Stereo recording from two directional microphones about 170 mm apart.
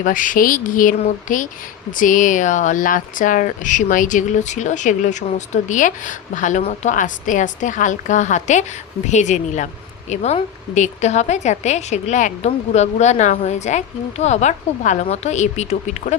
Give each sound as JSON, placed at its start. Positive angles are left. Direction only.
{"t": 0.0, "sound": "a woman's voice", "side_deg": 50}